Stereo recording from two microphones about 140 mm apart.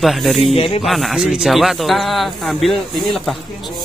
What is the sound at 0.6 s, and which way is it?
Speech, 45° left (ahead or behind).